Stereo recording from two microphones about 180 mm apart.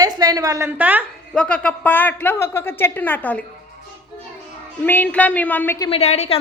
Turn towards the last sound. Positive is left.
turn(degrees=40)  # may be behind; listen again after turning